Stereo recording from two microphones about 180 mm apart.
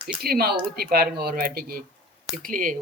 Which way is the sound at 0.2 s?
60° right (ahead or behind).